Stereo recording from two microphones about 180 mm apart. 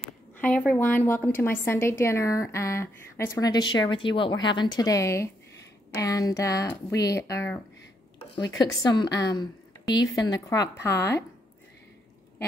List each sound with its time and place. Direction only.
0.4 s a woman's voice: 10° left (ahead or behind)